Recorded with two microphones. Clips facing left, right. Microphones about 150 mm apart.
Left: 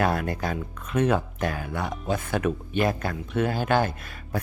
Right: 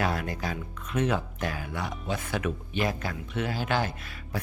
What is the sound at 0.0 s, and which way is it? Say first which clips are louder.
Speech: left 4 dB; 50° left (ahead or behind).